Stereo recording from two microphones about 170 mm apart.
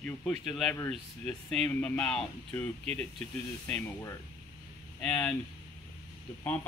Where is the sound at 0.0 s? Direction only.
5° left (ahead or behind).